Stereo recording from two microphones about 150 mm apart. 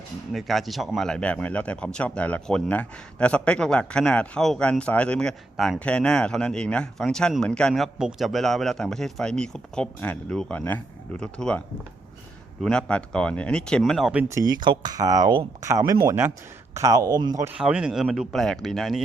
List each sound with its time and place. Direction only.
0.3 s speech: centre (ahead or behind)
12.6 s speech: 5° left (ahead or behind)
14.3 s speech: 25° right (ahead or behind)
17.6 s speech: 5° right (ahead or behind)